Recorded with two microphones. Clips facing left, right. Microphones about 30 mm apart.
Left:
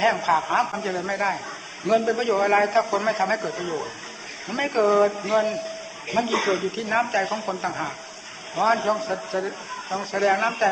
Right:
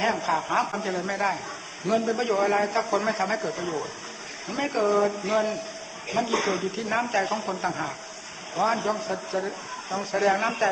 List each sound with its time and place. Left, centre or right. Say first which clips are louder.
0.0 s a man's voice: left 4 dB; centre